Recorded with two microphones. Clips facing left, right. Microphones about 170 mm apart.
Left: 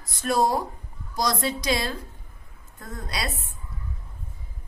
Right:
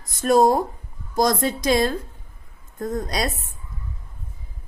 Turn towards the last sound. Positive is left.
turn(degrees=-45)  # may be behind; listen again after turning